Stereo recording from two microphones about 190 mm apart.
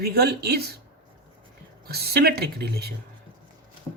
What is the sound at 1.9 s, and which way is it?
A man's voice, 55° right (ahead or behind).